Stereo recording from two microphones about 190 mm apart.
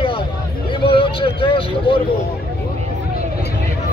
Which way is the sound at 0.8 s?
25° left (ahead or behind).